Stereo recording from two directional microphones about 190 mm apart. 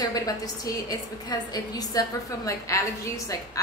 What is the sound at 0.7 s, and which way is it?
A woman's voice, 20° left (ahead or behind).